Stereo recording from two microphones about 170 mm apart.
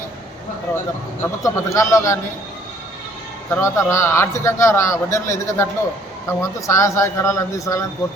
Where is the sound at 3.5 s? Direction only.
15° left (ahead or behind).